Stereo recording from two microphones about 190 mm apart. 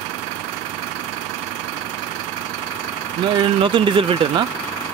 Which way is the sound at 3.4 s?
25° right (ahead or behind).